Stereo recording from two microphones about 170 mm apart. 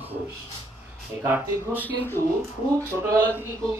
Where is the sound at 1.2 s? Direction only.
10° right (ahead or behind).